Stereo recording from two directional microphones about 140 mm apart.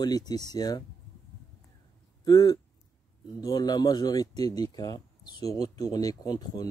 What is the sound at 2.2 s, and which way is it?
Speech, 30° left (ahead or behind).